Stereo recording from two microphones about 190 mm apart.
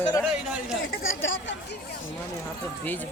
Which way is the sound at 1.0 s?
85° left.